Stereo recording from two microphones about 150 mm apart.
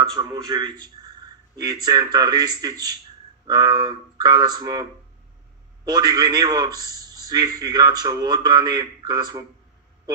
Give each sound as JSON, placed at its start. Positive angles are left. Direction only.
{"t": 0.1, "sound": "a man's voice", "side_deg": -25}
{"t": 5.9, "sound": "a man's voice", "side_deg": -25}